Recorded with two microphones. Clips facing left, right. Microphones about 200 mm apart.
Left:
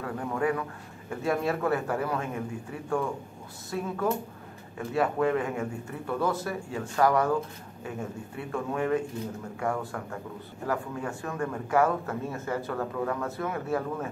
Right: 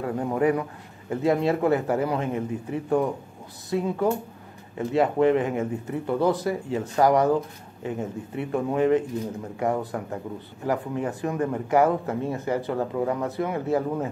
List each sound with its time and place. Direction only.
0.0 s speech: 20° right (ahead or behind)